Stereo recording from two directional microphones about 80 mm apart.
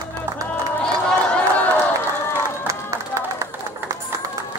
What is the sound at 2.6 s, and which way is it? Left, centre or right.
Music, right.